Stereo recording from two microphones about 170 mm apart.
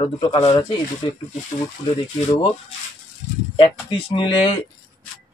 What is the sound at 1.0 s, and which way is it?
Speech, 30° left (ahead or behind).